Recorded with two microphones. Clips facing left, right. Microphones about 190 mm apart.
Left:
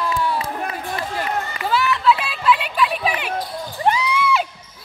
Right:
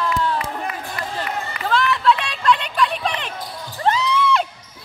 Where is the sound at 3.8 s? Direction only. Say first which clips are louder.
Even; 15° left (ahead or behind).